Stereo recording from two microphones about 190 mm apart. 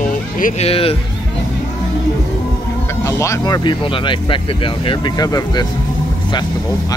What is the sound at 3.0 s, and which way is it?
Speech, 15° left (ahead or behind).